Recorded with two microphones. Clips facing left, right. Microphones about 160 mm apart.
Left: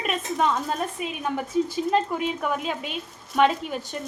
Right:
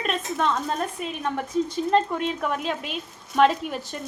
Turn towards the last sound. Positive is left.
turn(degrees=0)  # may be behind; listen again after turning